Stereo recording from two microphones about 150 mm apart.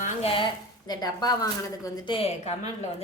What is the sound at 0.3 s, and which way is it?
A woman's voice, 30° left (ahead or behind).